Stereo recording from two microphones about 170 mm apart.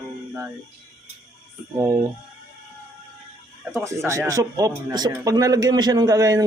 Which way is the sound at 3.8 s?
15° right (ahead or behind).